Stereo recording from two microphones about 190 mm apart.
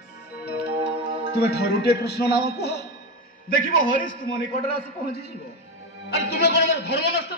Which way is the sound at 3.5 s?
45° left (ahead or behind).